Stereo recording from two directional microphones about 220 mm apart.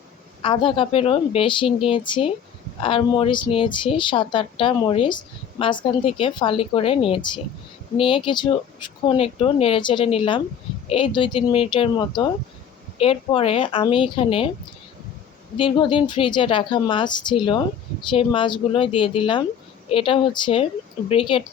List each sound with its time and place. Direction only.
0.4 s a woman's voice: 25° left (ahead or behind)
15.5 s a woman's voice: 25° left (ahead or behind)